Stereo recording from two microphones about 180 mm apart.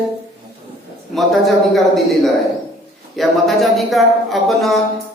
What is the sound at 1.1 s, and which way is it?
Speech, centre (ahead or behind).